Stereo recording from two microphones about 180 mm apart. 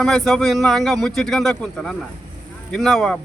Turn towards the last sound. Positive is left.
turn(degrees=0)  # may be behind; listen again after turning